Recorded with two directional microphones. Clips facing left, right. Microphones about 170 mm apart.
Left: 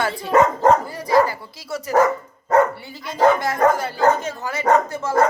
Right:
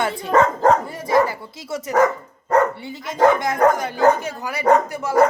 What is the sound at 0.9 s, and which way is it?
Dog, 25° right (ahead or behind).